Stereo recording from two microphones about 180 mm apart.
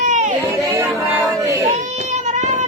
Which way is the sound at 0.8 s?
15° right (ahead or behind).